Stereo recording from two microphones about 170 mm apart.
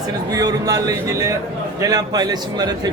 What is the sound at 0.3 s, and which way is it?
A man's voice, 20° right (ahead or behind).